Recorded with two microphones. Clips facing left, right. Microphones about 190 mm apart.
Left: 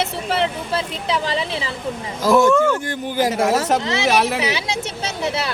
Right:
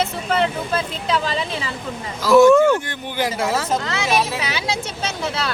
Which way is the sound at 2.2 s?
50° left (ahead or behind).